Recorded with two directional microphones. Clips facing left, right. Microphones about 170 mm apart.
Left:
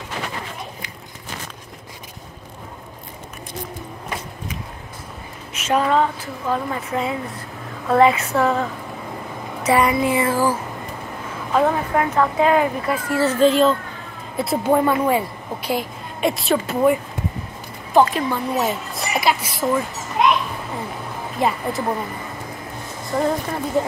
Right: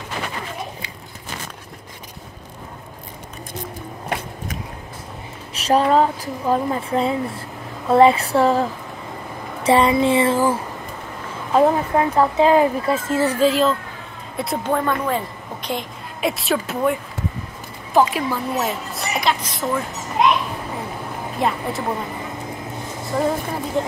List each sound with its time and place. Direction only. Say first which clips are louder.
4.1 s biting: right 4 dB; 60° right (ahead or behind)
5.5 s a woman's voice: right 2 dB; 35° right (ahead or behind); by 13.4 s 20° right (ahead or behind)
13.4 s a woman's voice: left 5 dB; centre (ahead or behind)
14.7 s a woman's voice: left 4 dB; 10° left (ahead or behind)
18.0 s a woman's voice: left 1 dB; 5° right (ahead or behind)
21.4 s a woman's voice: left 1 dB; centre (ahead or behind)
23.1 s a woman's voice: even; 5° right (ahead or behind)